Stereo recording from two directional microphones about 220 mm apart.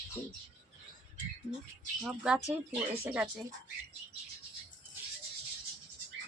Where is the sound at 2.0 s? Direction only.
5° right (ahead or behind).